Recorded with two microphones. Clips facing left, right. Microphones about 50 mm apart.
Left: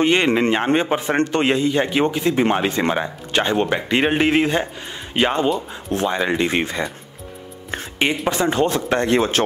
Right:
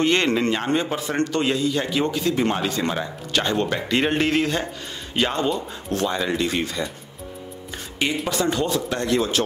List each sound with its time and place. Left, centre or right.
0.0 s a man's voice: left